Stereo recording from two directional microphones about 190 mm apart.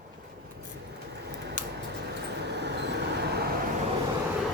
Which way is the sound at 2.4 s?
60° right (ahead or behind).